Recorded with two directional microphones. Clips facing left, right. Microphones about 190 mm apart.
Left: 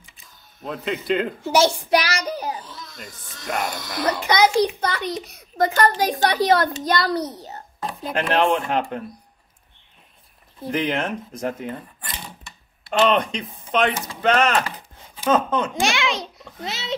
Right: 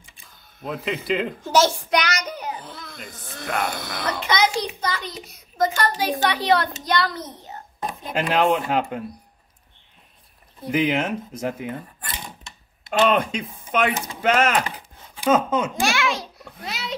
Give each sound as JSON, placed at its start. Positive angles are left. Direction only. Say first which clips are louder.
{"t": 0.6, "sound": "a man's voice", "louder": "even", "side_deg": 0}
{"t": 1.9, "sound": "child singing", "louder": "left 3 dB", "side_deg": 30}
{"t": 2.6, "sound": "speech", "louder": "right 1 dB", "side_deg": -55}
{"t": 4.8, "sound": "a child's voice", "louder": "left 4 dB", "side_deg": 65}
{"t": 6.9, "sound": "child singing", "louder": "left 1 dB", "side_deg": 40}
{"t": 8.1, "sound": "speech", "louder": "even", "side_deg": -10}
{"t": 10.7, "sound": "speech", "louder": "right 2 dB", "side_deg": -10}
{"t": 12.4, "sound": "typing", "louder": "left 3 dB", "side_deg": -20}
{"t": 13.1, "sound": "speech", "louder": "even", "side_deg": -5}
{"t": 15.7, "sound": "a child's voice", "louder": "even", "side_deg": 20}